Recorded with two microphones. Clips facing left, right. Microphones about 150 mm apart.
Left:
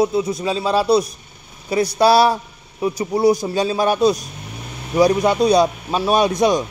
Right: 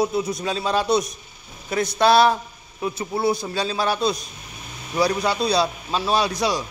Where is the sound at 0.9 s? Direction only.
30° left (ahead or behind).